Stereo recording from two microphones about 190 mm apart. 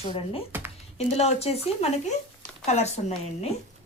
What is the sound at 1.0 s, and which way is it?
Speech, 35° left (ahead or behind).